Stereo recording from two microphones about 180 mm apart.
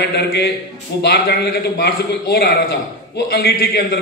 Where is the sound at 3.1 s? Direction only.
60° left (ahead or behind).